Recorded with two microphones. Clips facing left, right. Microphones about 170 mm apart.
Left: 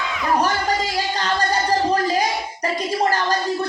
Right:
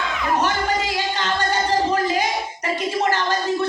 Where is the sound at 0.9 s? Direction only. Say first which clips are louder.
Left 1 dB; 35° left (ahead or behind).